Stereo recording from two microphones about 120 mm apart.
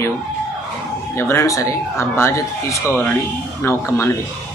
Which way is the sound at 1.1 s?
20° left (ahead or behind).